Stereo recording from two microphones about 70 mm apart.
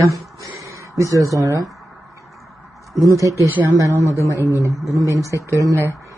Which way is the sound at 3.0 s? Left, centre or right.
Right.